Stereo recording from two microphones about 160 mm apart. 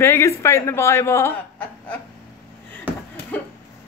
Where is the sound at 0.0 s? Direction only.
15° left (ahead or behind).